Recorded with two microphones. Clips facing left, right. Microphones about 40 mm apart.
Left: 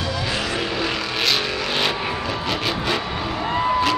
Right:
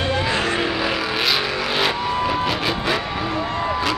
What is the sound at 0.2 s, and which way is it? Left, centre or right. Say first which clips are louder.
Vehicle: right 3 dB; right.